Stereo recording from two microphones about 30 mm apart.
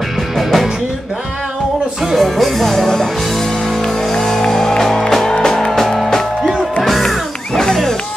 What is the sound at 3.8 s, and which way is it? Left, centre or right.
Music, centre.